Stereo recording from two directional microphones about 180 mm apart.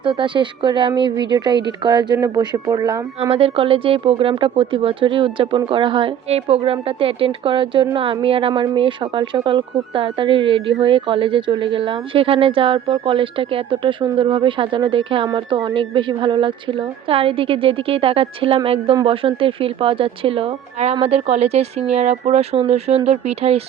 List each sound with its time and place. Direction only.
0.0 s speech: 30° right (ahead or behind)
3.2 s speech: 30° right (ahead or behind)